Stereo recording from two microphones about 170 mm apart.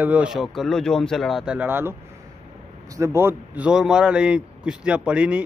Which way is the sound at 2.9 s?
15° right (ahead or behind).